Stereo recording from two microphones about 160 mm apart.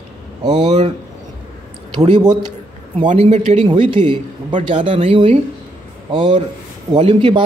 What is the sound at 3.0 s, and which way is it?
Speech, 45° right (ahead or behind).